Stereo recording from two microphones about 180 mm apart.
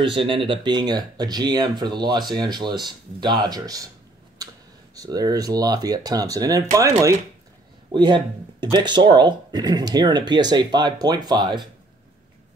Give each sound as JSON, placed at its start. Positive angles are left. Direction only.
{"t": 0.0, "sound": "speech", "side_deg": -30}
{"t": 4.4, "sound": "a sound", "side_deg": -20}
{"t": 4.9, "sound": "speech", "side_deg": -20}